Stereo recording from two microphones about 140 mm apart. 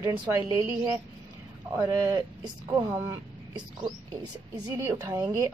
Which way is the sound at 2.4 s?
10° right (ahead or behind).